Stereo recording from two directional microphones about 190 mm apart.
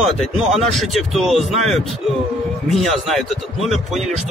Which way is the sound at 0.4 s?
Centre (ahead or behind).